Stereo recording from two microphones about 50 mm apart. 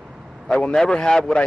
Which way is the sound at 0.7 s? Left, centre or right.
Centre.